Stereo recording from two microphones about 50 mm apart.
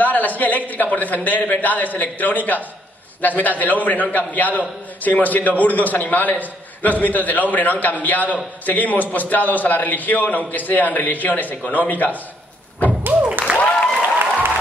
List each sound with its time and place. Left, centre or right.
0.0 s a woman's voice: left
13.0 s a sound: right
13.6 s applause: left